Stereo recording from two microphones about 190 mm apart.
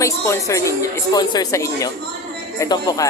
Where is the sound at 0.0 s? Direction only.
15° left (ahead or behind).